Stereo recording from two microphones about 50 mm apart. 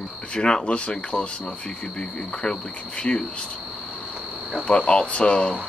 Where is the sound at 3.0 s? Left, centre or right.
Centre.